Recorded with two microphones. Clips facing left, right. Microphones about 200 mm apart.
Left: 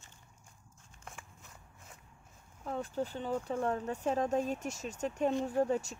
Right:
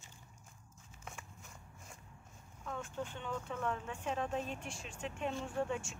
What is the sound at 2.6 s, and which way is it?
Speech, 35° left (ahead or behind).